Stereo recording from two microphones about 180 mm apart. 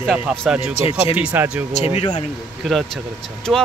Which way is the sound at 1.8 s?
35° left (ahead or behind).